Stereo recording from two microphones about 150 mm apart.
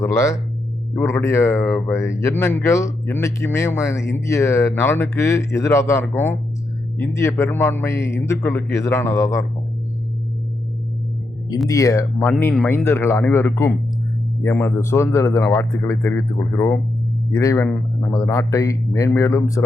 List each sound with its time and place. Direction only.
0.0 s speech: 20° left (ahead or behind)
11.7 s speech: 20° left (ahead or behind)